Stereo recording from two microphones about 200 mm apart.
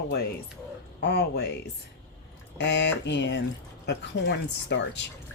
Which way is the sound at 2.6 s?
60° left (ahead or behind).